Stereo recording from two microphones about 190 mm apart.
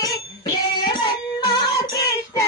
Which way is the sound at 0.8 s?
25° left (ahead or behind).